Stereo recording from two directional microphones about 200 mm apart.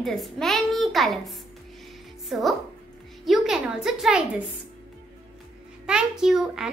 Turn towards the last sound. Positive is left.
turn(degrees=0)  # may be behind; listen again after turning